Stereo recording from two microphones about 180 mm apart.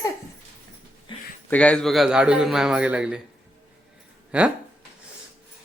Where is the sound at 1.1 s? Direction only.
30° left (ahead or behind).